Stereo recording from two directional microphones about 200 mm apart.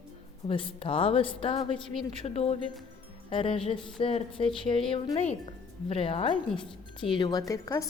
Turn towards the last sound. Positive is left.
turn(degrees=15)  # may be behind; listen again after turning